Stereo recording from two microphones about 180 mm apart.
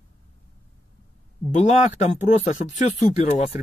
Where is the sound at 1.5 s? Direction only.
40° left (ahead or behind).